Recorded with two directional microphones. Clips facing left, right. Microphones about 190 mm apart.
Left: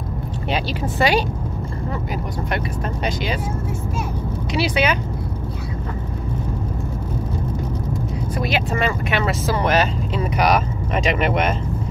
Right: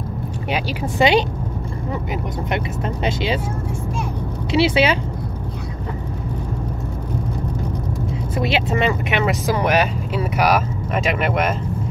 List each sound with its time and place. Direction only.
0.5 s speech: 20° right (ahead or behind)
2.5 s speech: 25° right (ahead or behind)
4.5 s speech: 25° right (ahead or behind)
8.4 s speech: 25° right (ahead or behind); by 11.5 s 5° right (ahead or behind)